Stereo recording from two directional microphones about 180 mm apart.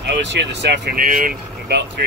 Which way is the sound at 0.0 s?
75° right (ahead or behind).